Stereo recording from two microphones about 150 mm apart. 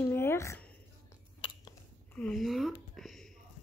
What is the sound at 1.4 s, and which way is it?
Chewing, 35° left (ahead or behind).